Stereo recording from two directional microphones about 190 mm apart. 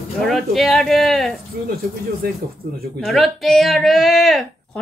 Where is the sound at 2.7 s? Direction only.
55° right (ahead or behind).